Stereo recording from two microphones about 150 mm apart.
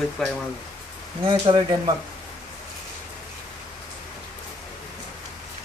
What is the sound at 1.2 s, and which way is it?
Speech, 35° right (ahead or behind).